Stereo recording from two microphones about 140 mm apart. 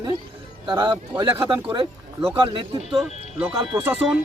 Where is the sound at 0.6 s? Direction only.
35° right (ahead or behind).